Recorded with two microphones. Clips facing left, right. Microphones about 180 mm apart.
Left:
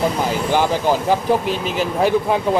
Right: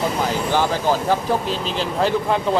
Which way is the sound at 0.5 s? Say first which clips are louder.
Left 3 dB; 15° left (ahead or behind).